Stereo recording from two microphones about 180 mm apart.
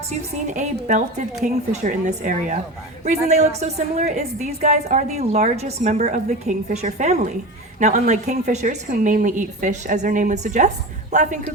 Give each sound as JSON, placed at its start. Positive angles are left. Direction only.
{"t": 0.1, "sound": "a woman's voice", "side_deg": -45}